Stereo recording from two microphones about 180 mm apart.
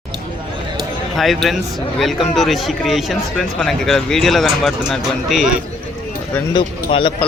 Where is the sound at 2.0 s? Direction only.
Centre (ahead or behind).